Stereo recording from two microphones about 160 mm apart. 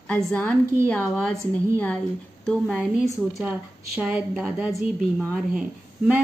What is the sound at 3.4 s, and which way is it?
Speech, 5° right (ahead or behind).